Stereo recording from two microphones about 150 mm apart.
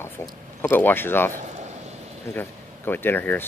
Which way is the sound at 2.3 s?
15° left (ahead or behind).